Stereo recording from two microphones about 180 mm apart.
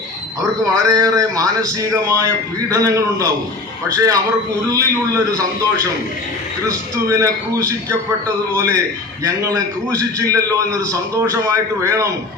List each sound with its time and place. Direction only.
0.6 s a man's voice: 20° right (ahead or behind)
6.7 s a man's voice: 15° right (ahead or behind)